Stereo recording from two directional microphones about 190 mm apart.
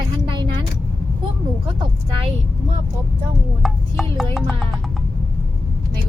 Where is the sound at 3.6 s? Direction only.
Centre (ahead or behind).